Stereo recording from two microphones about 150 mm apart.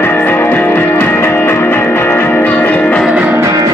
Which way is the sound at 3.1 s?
5° right (ahead or behind).